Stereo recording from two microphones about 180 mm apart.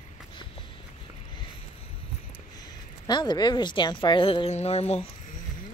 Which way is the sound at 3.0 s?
25° left (ahead or behind).